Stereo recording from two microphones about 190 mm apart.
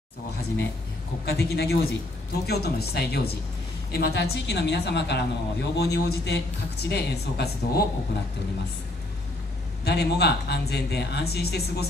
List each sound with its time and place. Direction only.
1.2 s a woman's voice: 55° left (ahead or behind)
9.8 s a woman's voice: 60° left (ahead or behind)